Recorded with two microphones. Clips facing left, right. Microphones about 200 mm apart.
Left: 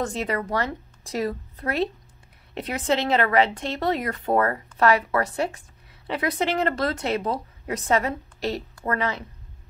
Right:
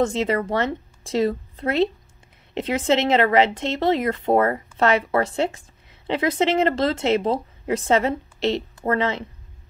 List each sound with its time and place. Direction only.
0.0 s speech: 25° right (ahead or behind)